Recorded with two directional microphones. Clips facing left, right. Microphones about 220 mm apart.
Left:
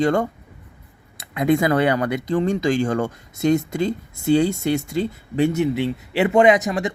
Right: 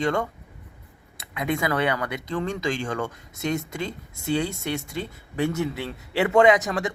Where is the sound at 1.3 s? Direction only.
40° left (ahead or behind).